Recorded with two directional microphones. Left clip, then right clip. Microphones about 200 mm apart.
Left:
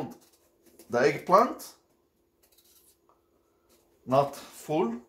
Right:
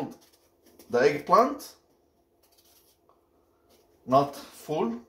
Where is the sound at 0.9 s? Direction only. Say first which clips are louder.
Right 2 dB; 35° left (ahead or behind).